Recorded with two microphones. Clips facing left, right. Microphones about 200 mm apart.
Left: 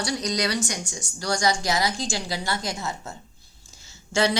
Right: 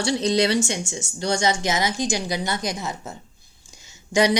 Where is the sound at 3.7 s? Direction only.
15° right (ahead or behind).